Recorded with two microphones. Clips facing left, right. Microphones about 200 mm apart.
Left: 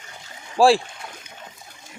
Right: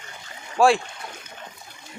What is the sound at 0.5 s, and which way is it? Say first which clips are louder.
Speech: left 2 dB; 30° left (ahead or behind).